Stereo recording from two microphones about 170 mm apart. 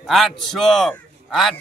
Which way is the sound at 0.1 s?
Centre (ahead or behind).